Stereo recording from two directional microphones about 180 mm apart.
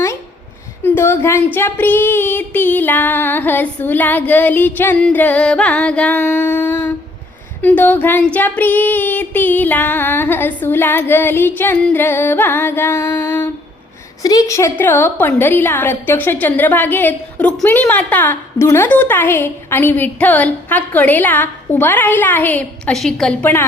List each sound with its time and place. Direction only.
0.8 s a woman's voice: 10° left (ahead or behind)